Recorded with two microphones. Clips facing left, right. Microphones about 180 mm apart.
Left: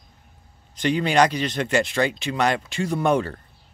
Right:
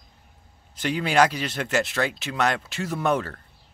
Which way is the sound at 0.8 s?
5° right (ahead or behind).